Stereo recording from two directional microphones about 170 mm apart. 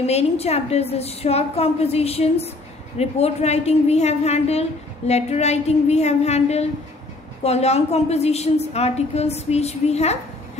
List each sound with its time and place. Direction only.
0.0 s a woman's voice: 40° left (ahead or behind)